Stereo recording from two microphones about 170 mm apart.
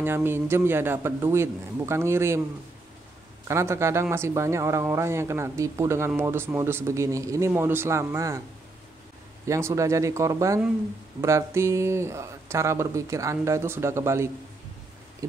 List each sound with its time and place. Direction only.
0.0 s speech: 15° right (ahead or behind)
3.4 s speech: 15° right (ahead or behind)
9.5 s speech: 15° right (ahead or behind)